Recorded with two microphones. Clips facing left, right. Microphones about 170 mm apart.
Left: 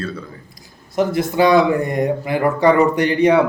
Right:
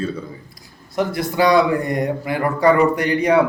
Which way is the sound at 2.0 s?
25° left (ahead or behind).